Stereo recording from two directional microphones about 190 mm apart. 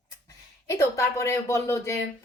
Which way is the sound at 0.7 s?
15° left (ahead or behind).